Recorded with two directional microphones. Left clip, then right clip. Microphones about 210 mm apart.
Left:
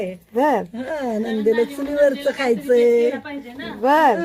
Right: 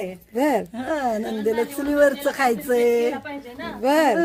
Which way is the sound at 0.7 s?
55° right (ahead or behind).